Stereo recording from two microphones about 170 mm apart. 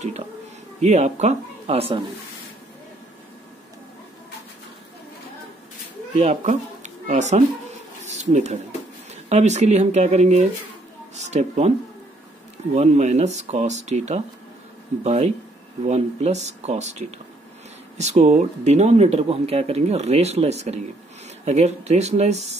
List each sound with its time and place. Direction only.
0.7 s speech: 40° right (ahead or behind)
6.1 s speech: 40° right (ahead or behind)
8.0 s a sound: 40° right (ahead or behind)
9.1 s speech: 40° right (ahead or behind)
12.7 s speech: 40° right (ahead or behind)
17.9 s speech: 40° right (ahead or behind)